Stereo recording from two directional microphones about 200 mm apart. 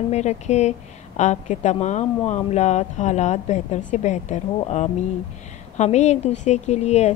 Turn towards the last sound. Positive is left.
turn(degrees=35)  # may be behind; listen again after turning